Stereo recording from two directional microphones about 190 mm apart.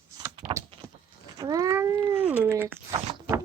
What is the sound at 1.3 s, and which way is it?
Cat, 20° right (ahead or behind).